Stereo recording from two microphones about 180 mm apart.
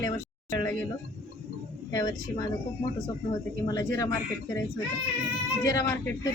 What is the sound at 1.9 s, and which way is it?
Speech, 20° left (ahead or behind).